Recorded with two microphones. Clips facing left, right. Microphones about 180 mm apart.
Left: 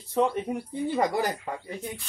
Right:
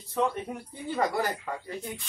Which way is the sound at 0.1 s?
20° left (ahead or behind).